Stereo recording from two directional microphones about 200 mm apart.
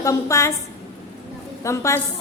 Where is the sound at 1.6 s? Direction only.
15° left (ahead or behind).